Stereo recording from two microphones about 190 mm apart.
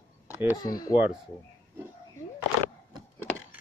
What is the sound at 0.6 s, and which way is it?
Speech, 20° left (ahead or behind).